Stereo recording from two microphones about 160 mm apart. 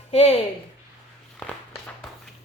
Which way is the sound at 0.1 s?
40° left (ahead or behind).